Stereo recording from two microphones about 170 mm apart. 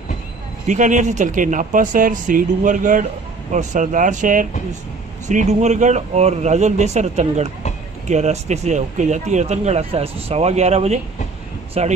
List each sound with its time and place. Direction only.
0.7 s speech: 45° right (ahead or behind)